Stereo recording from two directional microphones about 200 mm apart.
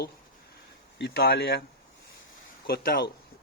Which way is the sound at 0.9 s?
55° left (ahead or behind).